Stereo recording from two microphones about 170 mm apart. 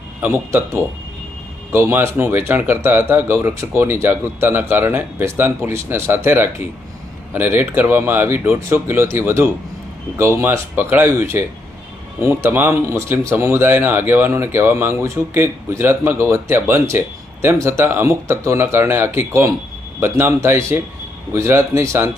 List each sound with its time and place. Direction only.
0.2 s speech: 15° right (ahead or behind)